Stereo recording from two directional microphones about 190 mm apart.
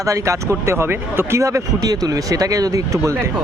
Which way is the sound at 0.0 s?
15° right (ahead or behind).